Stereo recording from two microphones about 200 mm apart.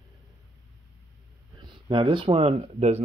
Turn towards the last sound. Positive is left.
turn(degrees=-30)  # may be behind; listen again after turning